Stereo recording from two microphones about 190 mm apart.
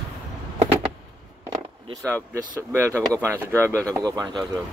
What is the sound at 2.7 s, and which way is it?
Speech, 15° right (ahead or behind).